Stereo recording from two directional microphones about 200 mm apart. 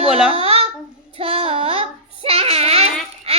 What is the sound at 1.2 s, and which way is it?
Child singing, 30° right (ahead or behind).